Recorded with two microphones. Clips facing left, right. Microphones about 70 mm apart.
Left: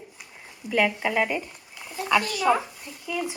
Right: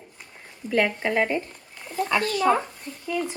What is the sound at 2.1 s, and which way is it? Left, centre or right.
Speech, right.